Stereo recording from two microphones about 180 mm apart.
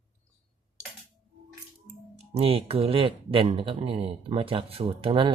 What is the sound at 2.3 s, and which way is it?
Speech, 30° right (ahead or behind).